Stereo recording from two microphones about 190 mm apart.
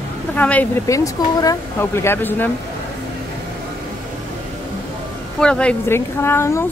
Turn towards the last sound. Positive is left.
turn(degrees=15)  # may be behind; listen again after turning